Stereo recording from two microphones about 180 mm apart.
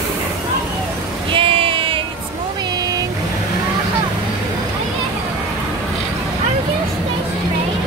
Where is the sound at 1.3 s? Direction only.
30° right (ahead or behind).